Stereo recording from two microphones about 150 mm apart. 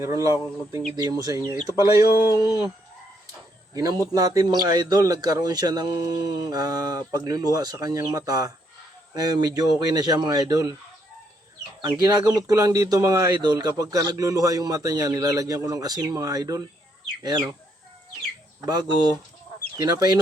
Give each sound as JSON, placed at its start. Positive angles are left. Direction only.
{"t": 0.0, "sound": "speech", "side_deg": -20}
{"t": 2.0, "sound": "a man's voice", "side_deg": 90}
{"t": 2.3, "sound": "speech", "side_deg": 20}
{"t": 4.4, "sound": "speech", "side_deg": -25}
{"t": 11.8, "sound": "speech", "side_deg": -25}
{"t": 18.6, "sound": "speech", "side_deg": -25}